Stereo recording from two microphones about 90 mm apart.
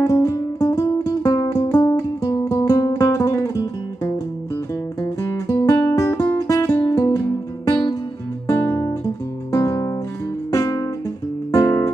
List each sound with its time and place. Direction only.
0.0 s music: 45° left (ahead or behind)
5.2 s guitar: 40° left (ahead or behind)
6.9 s music: 40° left (ahead or behind)
8.5 s guitar: 30° left (ahead or behind)
9.5 s music: 35° left (ahead or behind)
10.5 s guitar: 45° left (ahead or behind)
11.5 s music: 40° left (ahead or behind)